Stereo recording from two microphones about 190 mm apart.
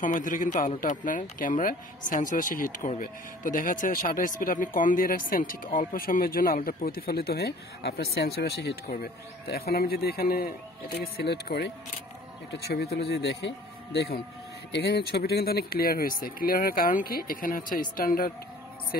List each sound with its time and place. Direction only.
0.0 s speech: 45° left (ahead or behind)